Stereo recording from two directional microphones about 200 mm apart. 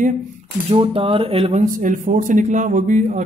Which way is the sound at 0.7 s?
30° right (ahead or behind).